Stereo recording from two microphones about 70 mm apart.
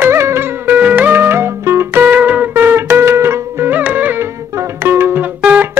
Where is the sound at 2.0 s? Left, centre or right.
Right.